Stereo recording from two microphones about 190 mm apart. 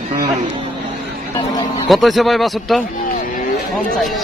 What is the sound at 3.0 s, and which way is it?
Vehicle, 45° left (ahead or behind).